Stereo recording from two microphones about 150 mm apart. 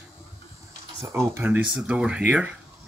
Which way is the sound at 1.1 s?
15° right (ahead or behind).